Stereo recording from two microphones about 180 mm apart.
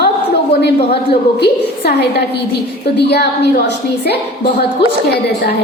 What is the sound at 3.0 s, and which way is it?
Speech, 65° left (ahead or behind).